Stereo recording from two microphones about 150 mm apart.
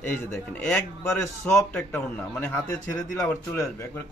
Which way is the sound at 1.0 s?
15° left (ahead or behind).